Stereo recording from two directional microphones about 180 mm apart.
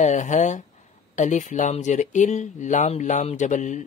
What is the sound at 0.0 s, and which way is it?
Speech, 40° left (ahead or behind).